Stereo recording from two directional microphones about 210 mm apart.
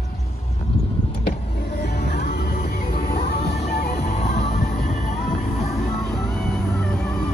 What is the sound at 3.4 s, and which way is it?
Music, 30° left (ahead or behind).